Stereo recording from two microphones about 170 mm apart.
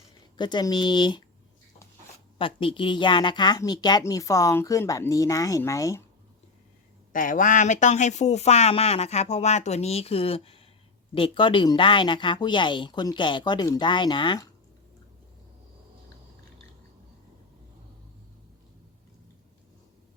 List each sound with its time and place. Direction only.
0.3 s a woman's voice: 25° left (ahead or behind)
2.4 s a woman's voice: 30° left (ahead or behind)
7.1 s a woman's voice: 50° left (ahead or behind); by 14.5 s 25° left (ahead or behind)